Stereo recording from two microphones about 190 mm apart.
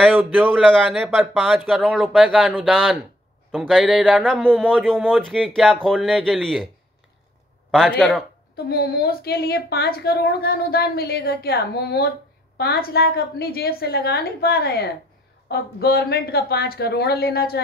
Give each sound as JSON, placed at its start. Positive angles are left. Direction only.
{"t": 0.1, "sound": "a man's voice", "side_deg": -10}
{"t": 0.7, "sound": "a man's voice", "side_deg": 0}
{"t": 7.7, "sound": "a man's voice", "side_deg": 5}
{"t": 8.6, "sound": "a woman's voice", "side_deg": 55}